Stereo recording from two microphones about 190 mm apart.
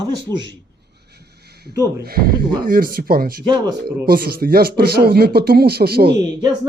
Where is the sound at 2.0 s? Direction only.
50° right (ahead or behind).